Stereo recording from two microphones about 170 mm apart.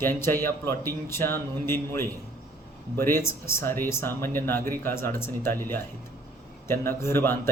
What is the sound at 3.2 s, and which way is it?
Speech, 15° left (ahead or behind).